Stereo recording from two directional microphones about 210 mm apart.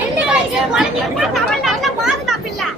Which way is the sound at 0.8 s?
Centre (ahead or behind).